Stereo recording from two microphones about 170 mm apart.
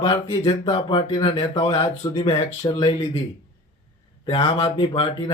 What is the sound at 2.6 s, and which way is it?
Speech, 25° left (ahead or behind).